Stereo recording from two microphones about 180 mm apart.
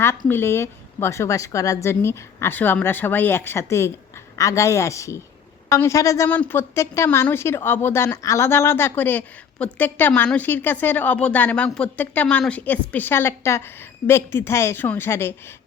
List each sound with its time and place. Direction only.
0.3 s a woman's voice: 15° left (ahead or behind)